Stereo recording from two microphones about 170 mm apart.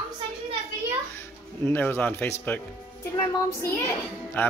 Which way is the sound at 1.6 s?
10° left (ahead or behind).